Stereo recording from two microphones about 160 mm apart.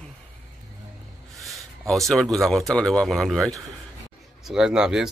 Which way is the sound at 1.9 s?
Centre (ahead or behind).